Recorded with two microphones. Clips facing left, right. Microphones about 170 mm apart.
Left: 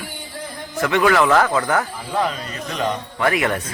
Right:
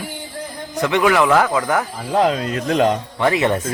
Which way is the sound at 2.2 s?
90° right.